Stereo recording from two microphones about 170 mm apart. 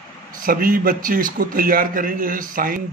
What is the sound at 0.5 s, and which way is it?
A man's voice, 55° right (ahead or behind).